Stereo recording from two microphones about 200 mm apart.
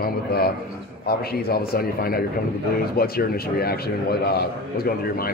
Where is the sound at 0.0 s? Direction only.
50° left (ahead or behind).